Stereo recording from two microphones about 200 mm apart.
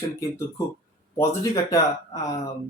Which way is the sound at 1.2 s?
15° left (ahead or behind).